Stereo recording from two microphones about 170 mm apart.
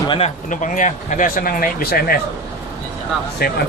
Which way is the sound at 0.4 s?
50° left (ahead or behind).